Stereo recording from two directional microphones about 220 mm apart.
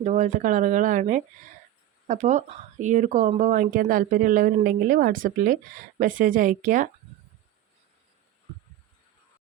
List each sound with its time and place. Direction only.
0.0 s speech: 35° right (ahead or behind)